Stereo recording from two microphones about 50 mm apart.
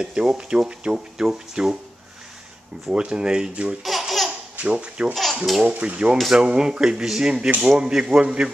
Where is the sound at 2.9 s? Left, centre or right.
Centre.